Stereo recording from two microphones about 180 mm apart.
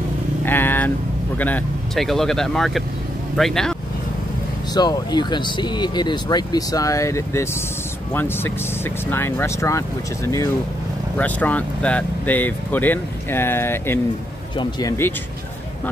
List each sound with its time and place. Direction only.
0.5 s vehicle: 10° left (ahead or behind)
1.4 s speech: 5° left (ahead or behind)
4.7 s speech: 25° left (ahead or behind)